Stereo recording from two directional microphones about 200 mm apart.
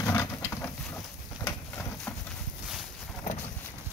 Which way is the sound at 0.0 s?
15° left (ahead or behind).